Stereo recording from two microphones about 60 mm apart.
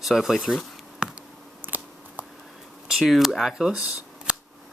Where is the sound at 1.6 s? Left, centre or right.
Right.